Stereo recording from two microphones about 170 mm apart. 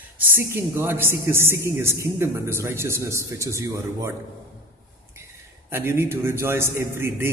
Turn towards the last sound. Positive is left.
turn(degrees=-15)  # may be behind; listen again after turning